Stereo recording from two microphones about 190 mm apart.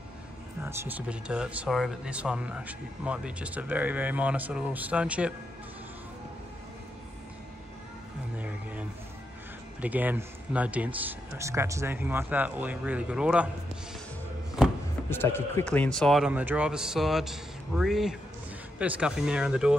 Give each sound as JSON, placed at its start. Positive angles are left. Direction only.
{"t": 0.6, "sound": "speech", "side_deg": -10}
{"t": 8.4, "sound": "a sound", "side_deg": -5}
{"t": 9.8, "sound": "speech", "side_deg": -10}
{"t": 15.0, "sound": "speech", "side_deg": 10}